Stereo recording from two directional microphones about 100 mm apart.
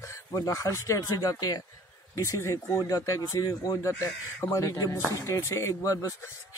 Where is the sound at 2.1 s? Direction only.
30° left (ahead or behind).